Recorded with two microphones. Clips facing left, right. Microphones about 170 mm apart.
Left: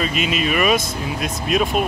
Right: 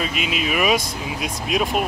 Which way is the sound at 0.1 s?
65° right (ahead or behind).